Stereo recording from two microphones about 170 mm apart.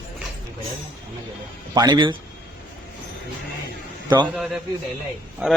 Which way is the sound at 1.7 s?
25° right (ahead or behind).